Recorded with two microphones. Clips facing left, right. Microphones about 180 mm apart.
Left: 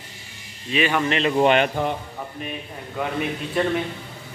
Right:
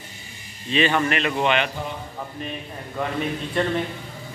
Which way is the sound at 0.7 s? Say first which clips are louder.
Right 1 dB; 10° left (ahead or behind).